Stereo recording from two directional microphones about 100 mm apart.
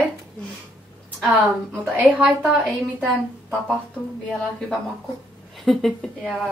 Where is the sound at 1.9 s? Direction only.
15° right (ahead or behind).